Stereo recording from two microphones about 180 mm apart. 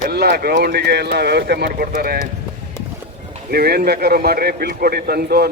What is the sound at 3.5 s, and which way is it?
A man's voice, 60° right (ahead or behind).